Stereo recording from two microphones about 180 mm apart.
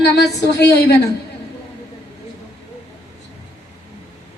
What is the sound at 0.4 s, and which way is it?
Speech, 65° left (ahead or behind).